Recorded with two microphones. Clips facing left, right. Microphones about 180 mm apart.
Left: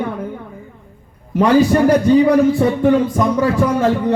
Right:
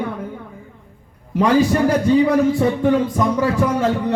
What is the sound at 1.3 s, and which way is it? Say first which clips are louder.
A man's voice: left 3 dB; 60° left (ahead or behind).